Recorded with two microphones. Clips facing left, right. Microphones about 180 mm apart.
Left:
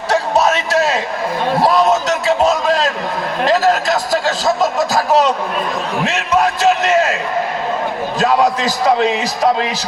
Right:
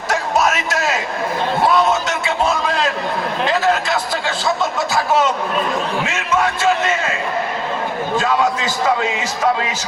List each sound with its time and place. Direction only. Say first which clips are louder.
0.1 s music: left 3 dB; 35° left (ahead or behind)
1.5 s a sound: left 3 dB; 35° left (ahead or behind)
3.4 s a man's voice: left 4 dB; 40° left (ahead or behind)
8.2 s a man's voice: left 6 dB; 40° left (ahead or behind)